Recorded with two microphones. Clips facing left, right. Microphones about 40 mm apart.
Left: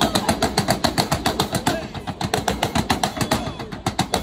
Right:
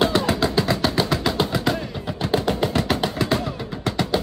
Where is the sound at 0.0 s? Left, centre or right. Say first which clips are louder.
Right 1 dB; left.